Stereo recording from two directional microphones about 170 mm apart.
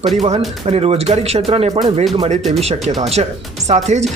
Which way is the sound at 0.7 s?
35° right (ahead or behind).